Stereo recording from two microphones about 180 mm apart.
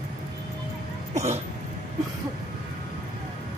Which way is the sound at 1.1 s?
40° right (ahead or behind).